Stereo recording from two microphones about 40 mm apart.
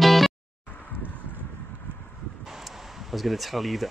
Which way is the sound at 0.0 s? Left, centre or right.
Centre.